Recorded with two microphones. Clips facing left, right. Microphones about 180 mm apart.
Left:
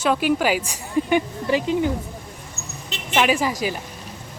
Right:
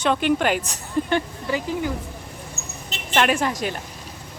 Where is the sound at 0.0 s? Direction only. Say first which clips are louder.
Even; 5° left (ahead or behind).